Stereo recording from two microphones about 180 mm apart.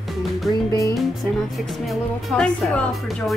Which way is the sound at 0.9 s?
Centre (ahead or behind).